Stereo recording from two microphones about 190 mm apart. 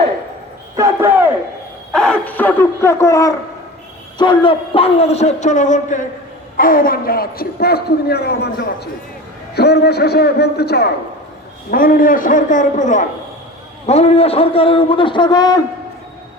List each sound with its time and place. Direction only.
0.8 s speech: 15° right (ahead or behind)
1.9 s a man's voice: 5° left (ahead or behind); by 15.6 s 20° left (ahead or behind)